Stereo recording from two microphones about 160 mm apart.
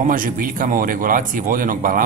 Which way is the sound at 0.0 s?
60° right (ahead or behind).